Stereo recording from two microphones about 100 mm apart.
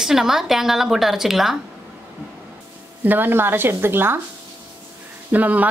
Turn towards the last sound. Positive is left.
turn(degrees=-15)  # may be behind; listen again after turning